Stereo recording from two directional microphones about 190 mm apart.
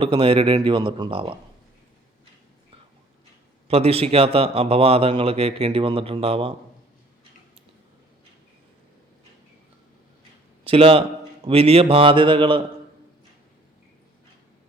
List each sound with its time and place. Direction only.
0.0 s speech: 30° right (ahead or behind)
3.7 s a man's voice: 30° right (ahead or behind)
10.6 s a man's voice: 30° right (ahead or behind)